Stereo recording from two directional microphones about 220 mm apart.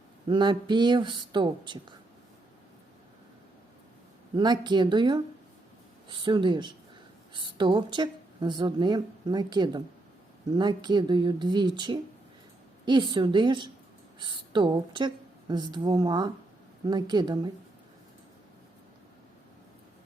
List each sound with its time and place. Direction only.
0.3 s speech: 20° right (ahead or behind)
4.4 s a woman's voice: 20° right (ahead or behind)